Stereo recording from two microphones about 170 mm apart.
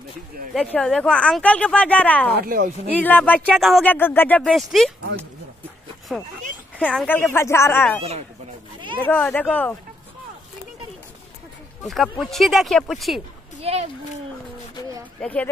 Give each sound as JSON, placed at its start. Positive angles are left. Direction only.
{"t": 0.6, "sound": "speech", "side_deg": 5}
{"t": 2.3, "sound": "speech", "side_deg": -60}
{"t": 2.9, "sound": "speech", "side_deg": 10}
{"t": 3.9, "sound": "speech", "side_deg": 10}
{"t": 6.1, "sound": "speech", "side_deg": 0}
{"t": 11.9, "sound": "speech", "side_deg": 0}
{"t": 13.6, "sound": "a sound", "side_deg": -35}
{"t": 15.1, "sound": "speech", "side_deg": 10}